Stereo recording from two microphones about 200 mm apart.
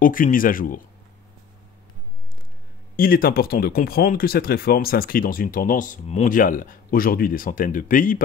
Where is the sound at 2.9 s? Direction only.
45° left (ahead or behind).